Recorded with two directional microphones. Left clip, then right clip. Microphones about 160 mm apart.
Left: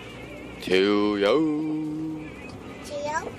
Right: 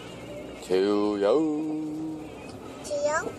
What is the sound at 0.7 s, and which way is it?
Speech, 15° left (ahead or behind).